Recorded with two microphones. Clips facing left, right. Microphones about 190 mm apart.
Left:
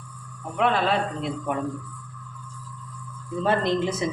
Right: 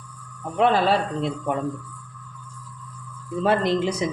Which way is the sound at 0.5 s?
35° right (ahead or behind).